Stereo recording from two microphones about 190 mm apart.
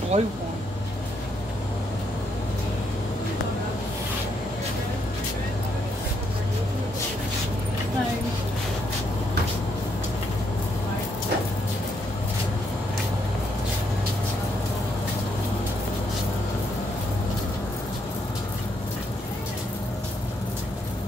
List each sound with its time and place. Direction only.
0.1 s speech: 40° right (ahead or behind)